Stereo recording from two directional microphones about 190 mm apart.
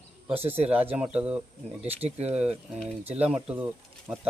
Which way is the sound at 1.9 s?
35° right (ahead or behind).